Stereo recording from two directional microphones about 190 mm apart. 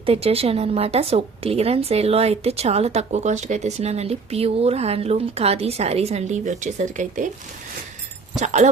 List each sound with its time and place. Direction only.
0.0 s a woman's voice: 30° right (ahead or behind)
8.4 s a woman's voice: 40° right (ahead or behind)